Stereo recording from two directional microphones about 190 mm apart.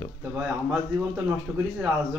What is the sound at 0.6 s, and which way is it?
Speech, 5° right (ahead or behind).